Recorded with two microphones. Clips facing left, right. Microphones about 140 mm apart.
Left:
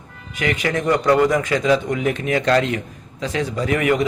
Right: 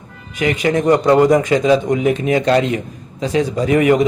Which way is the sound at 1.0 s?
30° right (ahead or behind).